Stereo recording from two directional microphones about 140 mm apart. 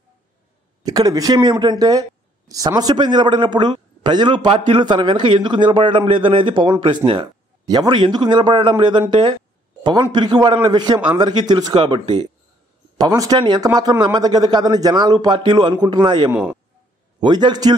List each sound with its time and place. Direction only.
0.8 s a man's voice: 25° right (ahead or behind)
16.3 s speech: 10° right (ahead or behind)
17.2 s speech: 30° right (ahead or behind)